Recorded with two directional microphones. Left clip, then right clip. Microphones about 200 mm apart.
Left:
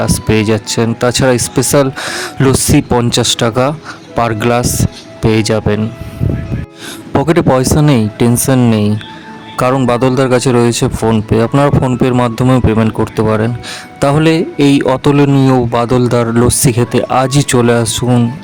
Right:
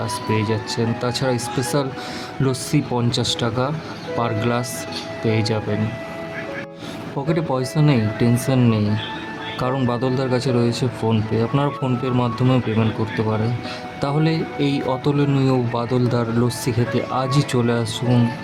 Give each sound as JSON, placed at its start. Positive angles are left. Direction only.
{"t": 0.0, "sound": "speech", "side_deg": 45}
{"t": 7.2, "sound": "speech", "side_deg": 45}